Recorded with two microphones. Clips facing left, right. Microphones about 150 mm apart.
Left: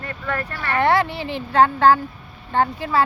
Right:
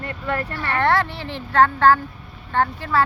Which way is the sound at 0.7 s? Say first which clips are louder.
Left 2 dB; 10° left (ahead or behind).